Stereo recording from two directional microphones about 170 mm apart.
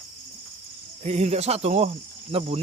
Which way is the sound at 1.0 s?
40° right (ahead or behind).